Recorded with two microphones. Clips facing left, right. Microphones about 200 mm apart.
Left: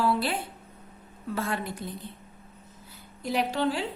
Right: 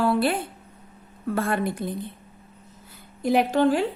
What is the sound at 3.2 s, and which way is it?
Speech, 50° right (ahead or behind).